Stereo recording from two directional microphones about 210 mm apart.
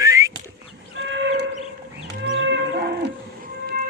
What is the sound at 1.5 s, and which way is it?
Chicken, 30° left (ahead or behind).